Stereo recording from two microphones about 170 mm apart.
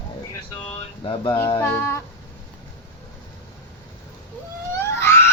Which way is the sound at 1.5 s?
15° left (ahead or behind).